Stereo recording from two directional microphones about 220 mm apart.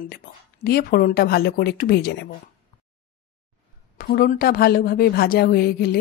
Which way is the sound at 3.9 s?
45° left (ahead or behind).